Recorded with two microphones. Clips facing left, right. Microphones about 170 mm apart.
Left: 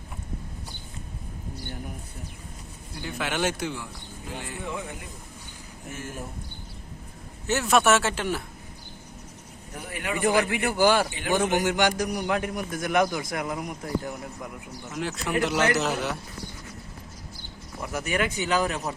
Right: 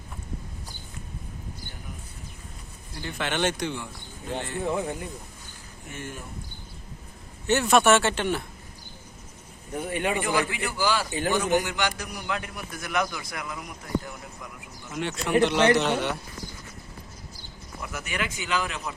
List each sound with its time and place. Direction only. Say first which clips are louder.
3.0 s speech: right 1 dB; 5° left (ahead or behind)
4.6 s speech: right 8 dB; 30° right (ahead or behind)
5.9 s speech: left 1 dB; centre (ahead or behind)
7.4 s speech: right 2 dB; centre (ahead or behind)
9.7 s speech: right 5 dB; 25° right (ahead or behind)
10.5 s a man's voice: left 5 dB; 55° left (ahead or behind)
14.9 s speech: right 4 dB; centre (ahead or behind)
15.5 s speech: right 2 dB; 30° right (ahead or behind)
15.8 s speech: right 2 dB; centre (ahead or behind)
17.8 s speech: left 5 dB; 40° left (ahead or behind)